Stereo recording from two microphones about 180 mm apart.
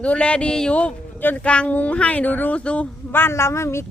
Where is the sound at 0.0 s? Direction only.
5° left (ahead or behind).